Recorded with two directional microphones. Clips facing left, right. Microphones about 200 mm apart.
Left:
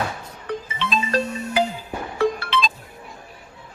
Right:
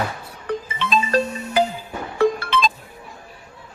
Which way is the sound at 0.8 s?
50° right (ahead or behind).